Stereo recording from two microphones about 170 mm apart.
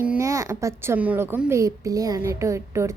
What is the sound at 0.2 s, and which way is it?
A woman's voice, 20° right (ahead or behind).